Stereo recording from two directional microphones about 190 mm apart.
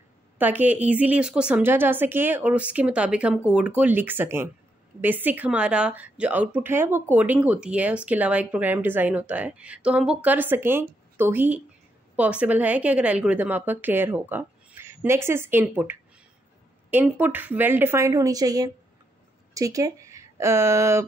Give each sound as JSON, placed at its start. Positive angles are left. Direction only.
{"t": 0.4, "sound": "speech", "side_deg": -10}